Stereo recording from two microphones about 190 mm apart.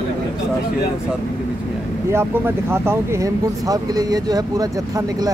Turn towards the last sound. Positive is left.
turn(degrees=-20)  # may be behind; listen again after turning